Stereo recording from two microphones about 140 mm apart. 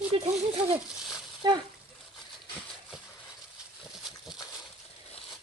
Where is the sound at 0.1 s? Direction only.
40° right (ahead or behind).